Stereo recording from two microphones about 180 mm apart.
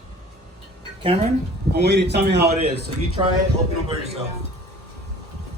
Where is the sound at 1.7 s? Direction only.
65° right (ahead or behind).